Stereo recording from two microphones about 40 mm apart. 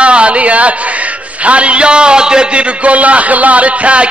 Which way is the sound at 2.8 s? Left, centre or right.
Right.